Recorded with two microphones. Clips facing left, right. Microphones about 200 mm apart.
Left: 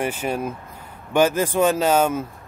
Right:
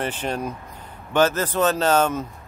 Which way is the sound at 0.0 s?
10° left (ahead or behind).